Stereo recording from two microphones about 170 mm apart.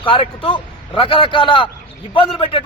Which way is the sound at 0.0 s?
30° left (ahead or behind).